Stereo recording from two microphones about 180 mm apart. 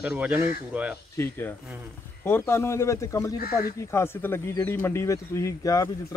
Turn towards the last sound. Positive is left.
turn(degrees=20)  # may be behind; listen again after turning